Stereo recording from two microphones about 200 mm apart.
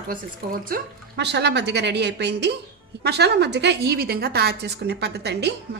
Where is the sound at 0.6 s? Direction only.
50° right (ahead or behind).